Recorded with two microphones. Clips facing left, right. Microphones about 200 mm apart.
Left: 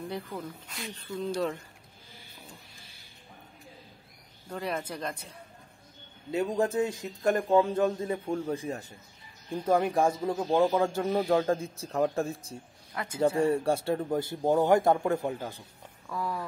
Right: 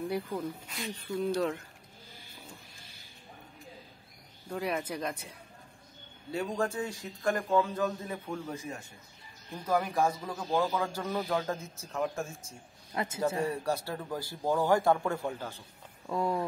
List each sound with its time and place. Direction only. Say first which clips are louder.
0.7 s speech: right 1 dB; 5° right (ahead or behind)
4.5 s speech: right 1 dB; 10° right (ahead or behind)
6.3 s speech: left 5 dB; 20° left (ahead or behind)
12.9 s speech: right 2 dB; 25° right (ahead or behind)
13.4 s speech: left 6 dB; 25° left (ahead or behind)
16.1 s speech: right 4 dB; 25° right (ahead or behind)